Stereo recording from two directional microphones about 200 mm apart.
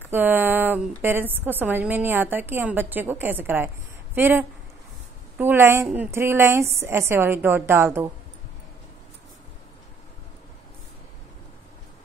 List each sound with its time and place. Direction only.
0.1 s a woman's voice: 10° right (ahead or behind)